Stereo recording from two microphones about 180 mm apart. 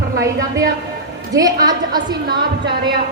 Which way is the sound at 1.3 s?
20° right (ahead or behind).